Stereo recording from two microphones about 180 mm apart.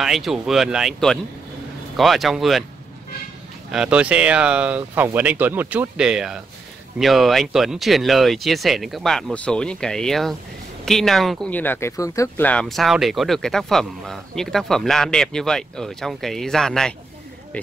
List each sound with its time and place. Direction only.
0.0 s speech: centre (ahead or behind)
3.7 s speech: 5° right (ahead or behind)